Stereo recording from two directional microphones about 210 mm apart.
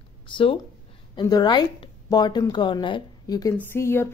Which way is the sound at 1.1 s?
20° left (ahead or behind).